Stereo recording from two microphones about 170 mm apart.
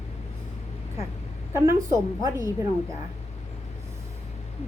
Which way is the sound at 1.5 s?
15° right (ahead or behind).